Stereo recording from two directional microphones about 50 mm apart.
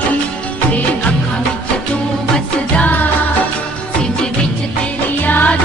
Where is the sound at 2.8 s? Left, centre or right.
Left.